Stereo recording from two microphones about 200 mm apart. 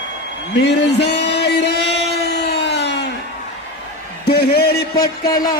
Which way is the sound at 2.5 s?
55° left (ahead or behind).